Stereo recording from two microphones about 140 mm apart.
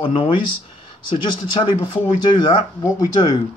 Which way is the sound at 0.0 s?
40° left (ahead or behind).